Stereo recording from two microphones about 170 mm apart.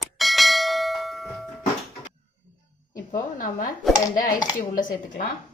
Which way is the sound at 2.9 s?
50° left (ahead or behind).